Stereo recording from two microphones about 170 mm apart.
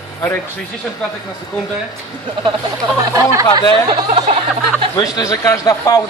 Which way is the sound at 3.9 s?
35° right (ahead or behind).